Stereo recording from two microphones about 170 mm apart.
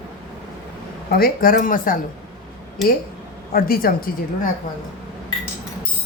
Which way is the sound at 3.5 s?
60° left (ahead or behind).